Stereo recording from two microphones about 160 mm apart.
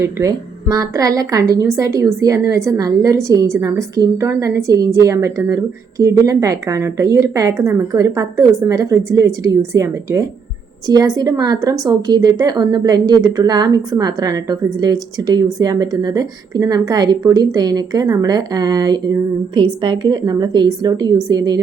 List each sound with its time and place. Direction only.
0.0 s a woman's voice: 20° right (ahead or behind)